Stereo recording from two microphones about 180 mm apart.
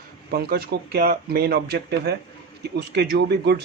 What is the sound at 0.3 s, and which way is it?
Speech, 60° right (ahead or behind).